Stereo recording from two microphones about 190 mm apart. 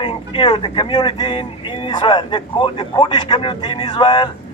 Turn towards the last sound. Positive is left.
turn(degrees=25)  # may be behind; listen again after turning